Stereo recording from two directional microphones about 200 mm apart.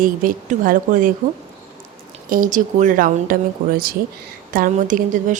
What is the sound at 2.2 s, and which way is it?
A woman's voice, 45° right (ahead or behind).